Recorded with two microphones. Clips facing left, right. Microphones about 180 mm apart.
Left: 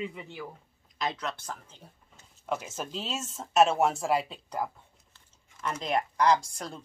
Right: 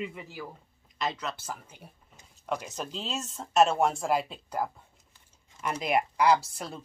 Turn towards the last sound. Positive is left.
turn(degrees=-5)  # may be behind; listen again after turning